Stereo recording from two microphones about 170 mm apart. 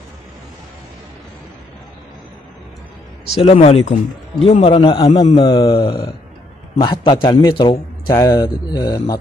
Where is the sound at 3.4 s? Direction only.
35° left (ahead or behind).